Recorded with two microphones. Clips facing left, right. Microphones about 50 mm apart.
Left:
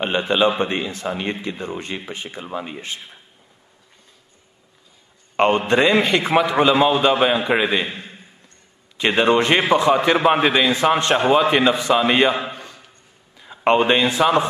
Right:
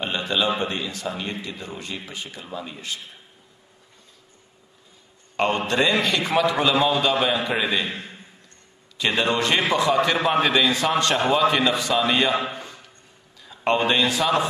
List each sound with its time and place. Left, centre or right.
0.0 s a man's voice: left
5.3 s a sound: left
5.7 s a man's voice: left
8.9 s a man's voice: left